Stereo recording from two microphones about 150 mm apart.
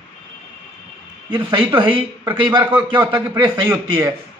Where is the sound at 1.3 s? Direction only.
35° right (ahead or behind).